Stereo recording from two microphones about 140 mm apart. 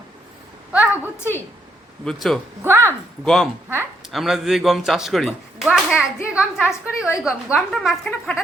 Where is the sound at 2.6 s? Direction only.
15° right (ahead or behind).